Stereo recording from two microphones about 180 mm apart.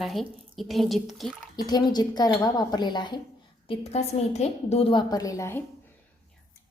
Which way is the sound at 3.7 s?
35° left (ahead or behind).